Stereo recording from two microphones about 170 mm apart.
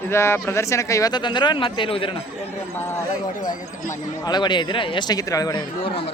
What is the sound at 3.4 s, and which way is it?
Speech, 25° left (ahead or behind).